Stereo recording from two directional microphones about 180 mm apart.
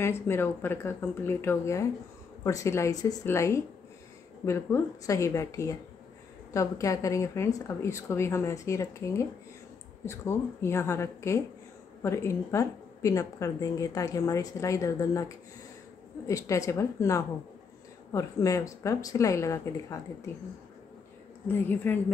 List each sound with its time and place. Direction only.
0.0 s a woman's voice: 15° left (ahead or behind)
21.5 s a woman's voice: 10° left (ahead or behind)